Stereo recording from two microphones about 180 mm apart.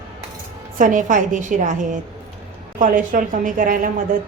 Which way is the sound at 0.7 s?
45° right (ahead or behind).